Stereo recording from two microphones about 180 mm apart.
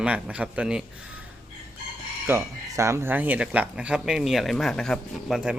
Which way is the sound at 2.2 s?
15° right (ahead or behind).